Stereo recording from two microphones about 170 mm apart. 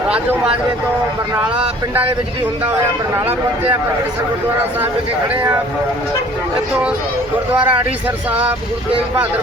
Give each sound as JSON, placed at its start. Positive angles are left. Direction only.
{"t": 0.1, "sound": "speech", "side_deg": -5}
{"t": 1.5, "sound": "speech", "side_deg": -35}
{"t": 3.2, "sound": "speech", "side_deg": -10}
{"t": 5.3, "sound": "speech", "side_deg": -10}
{"t": 7.5, "sound": "speech", "side_deg": -10}